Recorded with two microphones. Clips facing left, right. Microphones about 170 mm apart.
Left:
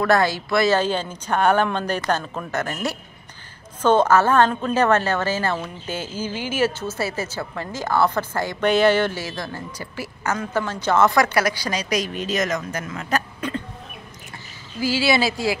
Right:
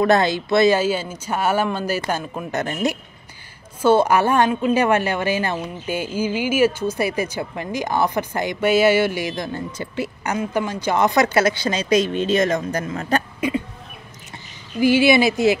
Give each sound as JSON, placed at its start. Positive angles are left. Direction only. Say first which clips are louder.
{"t": 0.0, "sound": "a woman's voice", "louder": "right 2 dB", "side_deg": -20}
{"t": 0.7, "sound": "a woman's voice", "louder": "right 1 dB", "side_deg": -10}
{"t": 13.4, "sound": "a woman's voice", "louder": "right 5 dB", "side_deg": -10}
{"t": 14.8, "sound": "a woman's voice", "louder": "right 6 dB", "side_deg": -20}